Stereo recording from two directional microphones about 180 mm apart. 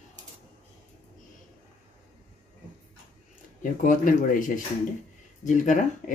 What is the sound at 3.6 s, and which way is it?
Speech, 45° left (ahead or behind).